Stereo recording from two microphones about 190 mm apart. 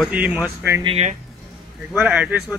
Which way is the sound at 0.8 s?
35° right (ahead or behind).